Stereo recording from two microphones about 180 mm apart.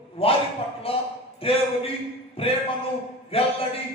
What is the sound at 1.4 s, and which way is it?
Speech, 30° left (ahead or behind).